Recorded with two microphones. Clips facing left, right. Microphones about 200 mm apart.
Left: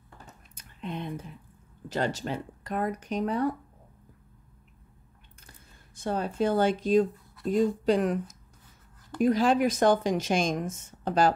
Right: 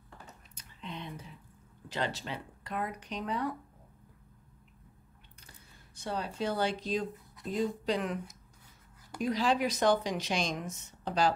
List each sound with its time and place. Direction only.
0.3 s a sound: 55° left (ahead or behind)
1.9 s a woman's voice: 45° left (ahead or behind)
5.9 s a woman's voice: 50° left (ahead or behind)